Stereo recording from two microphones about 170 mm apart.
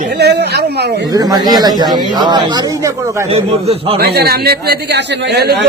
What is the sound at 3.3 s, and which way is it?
Speech, 35° right (ahead or behind).